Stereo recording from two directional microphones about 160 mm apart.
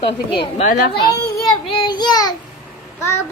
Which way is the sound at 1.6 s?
30° left (ahead or behind).